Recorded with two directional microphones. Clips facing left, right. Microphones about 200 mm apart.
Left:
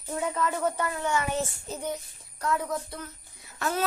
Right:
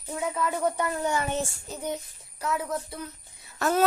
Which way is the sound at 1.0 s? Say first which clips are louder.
Right 1 dB; 35° right (ahead or behind).